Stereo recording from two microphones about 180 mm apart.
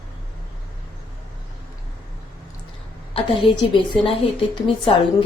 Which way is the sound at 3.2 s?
30° left (ahead or behind).